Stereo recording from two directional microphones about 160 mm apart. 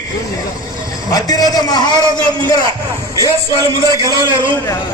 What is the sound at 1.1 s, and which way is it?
Speech, 25° left (ahead or behind).